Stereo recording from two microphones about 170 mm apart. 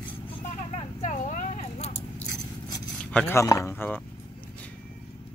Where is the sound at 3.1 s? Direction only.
10° left (ahead or behind).